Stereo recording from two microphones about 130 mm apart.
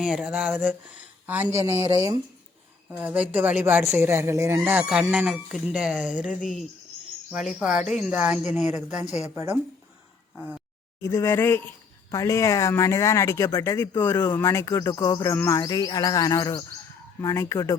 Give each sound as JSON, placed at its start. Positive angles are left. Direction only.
{"t": 0.0, "sound": "speech", "side_deg": -5}
{"t": 3.0, "sound": "speech", "side_deg": -10}
{"t": 7.3, "sound": "speech", "side_deg": -5}
{"t": 9.3, "sound": "speech", "side_deg": -20}
{"t": 11.0, "sound": "speech", "side_deg": 20}